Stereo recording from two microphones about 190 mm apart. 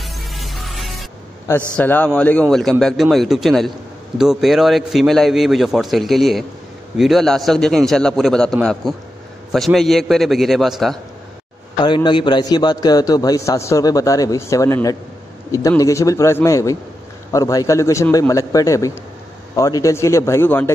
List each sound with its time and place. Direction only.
0.0 s music: centre (ahead or behind)
1.8 s a man's voice: 10° left (ahead or behind)
11.8 s a man's voice: 25° left (ahead or behind)